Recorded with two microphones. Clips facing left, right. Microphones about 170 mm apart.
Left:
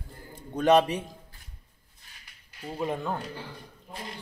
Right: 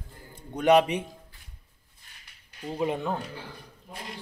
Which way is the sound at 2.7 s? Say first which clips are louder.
Right 2 dB; 10° right (ahead or behind).